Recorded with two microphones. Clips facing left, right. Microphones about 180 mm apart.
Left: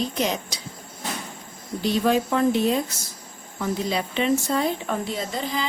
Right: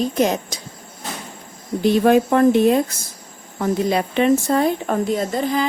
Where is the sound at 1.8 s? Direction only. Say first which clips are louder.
Right 7 dB; 50° right (ahead or behind).